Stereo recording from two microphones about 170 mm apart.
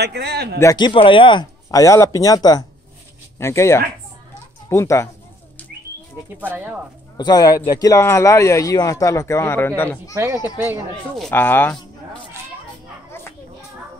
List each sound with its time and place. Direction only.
0.0 s speech: 75° right (ahead or behind)
0.6 s a man's voice: 20° left (ahead or behind)
6.5 s speech: 10° right (ahead or behind)
7.2 s a man's voice: 25° left (ahead or behind)
10.1 s speech: 15° right (ahead or behind)
11.1 s a man's voice: 10° left (ahead or behind)